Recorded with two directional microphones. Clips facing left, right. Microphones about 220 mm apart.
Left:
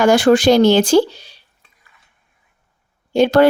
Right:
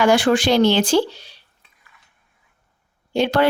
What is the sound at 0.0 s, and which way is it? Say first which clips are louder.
Speech: left 5 dB; 45° left (ahead or behind).